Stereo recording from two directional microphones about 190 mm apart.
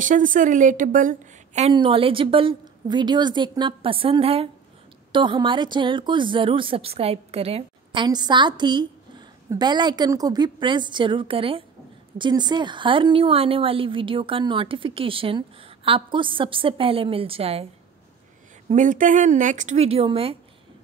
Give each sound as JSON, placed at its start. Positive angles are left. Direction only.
{"t": 0.0, "sound": "a woman's voice", "side_deg": -45}
{"t": 1.7, "sound": "a woman's voice", "side_deg": -25}
{"t": 18.7, "sound": "speech", "side_deg": -40}